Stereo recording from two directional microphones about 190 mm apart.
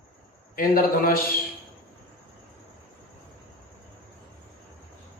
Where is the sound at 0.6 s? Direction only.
50° left (ahead or behind).